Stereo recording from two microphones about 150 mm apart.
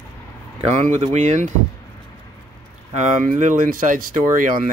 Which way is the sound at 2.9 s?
55° right (ahead or behind).